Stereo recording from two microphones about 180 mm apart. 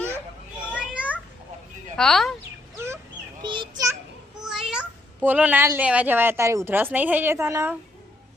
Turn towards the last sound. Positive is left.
turn(degrees=-15)  # may be behind; listen again after turning